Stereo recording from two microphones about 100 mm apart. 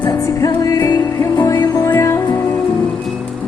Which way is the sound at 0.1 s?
35° left (ahead or behind).